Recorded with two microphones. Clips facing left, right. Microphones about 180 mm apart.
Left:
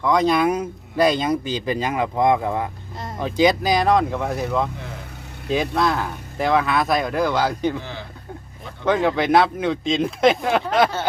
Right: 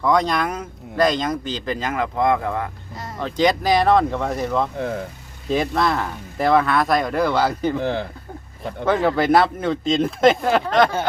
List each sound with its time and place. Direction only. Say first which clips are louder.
0.0 s speech: left 2 dB; centre (ahead or behind)
4.8 s speech: right 11 dB; 60° right (ahead or behind)
5.5 s speech: even; centre (ahead or behind)
7.8 s speech: right 10 dB; 55° right (ahead or behind)
8.9 s speech: right 1 dB; 5° right (ahead or behind)